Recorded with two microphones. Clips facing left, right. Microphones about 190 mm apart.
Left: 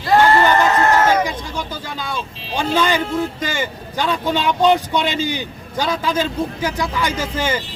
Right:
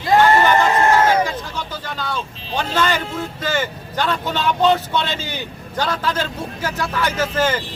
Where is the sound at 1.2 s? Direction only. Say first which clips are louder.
Even; 15° left (ahead or behind).